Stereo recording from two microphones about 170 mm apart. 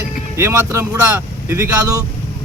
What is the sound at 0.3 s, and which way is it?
Speech, 15° right (ahead or behind).